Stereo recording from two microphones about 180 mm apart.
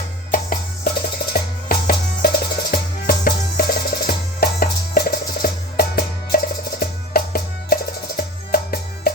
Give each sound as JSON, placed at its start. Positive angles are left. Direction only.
{"t": 0.3, "sound": "music", "side_deg": 45}